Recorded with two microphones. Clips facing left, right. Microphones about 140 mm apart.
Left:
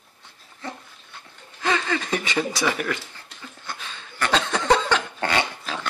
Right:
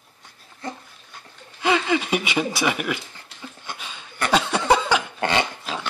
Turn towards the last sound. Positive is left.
turn(degrees=-20)  # may be behind; listen again after turning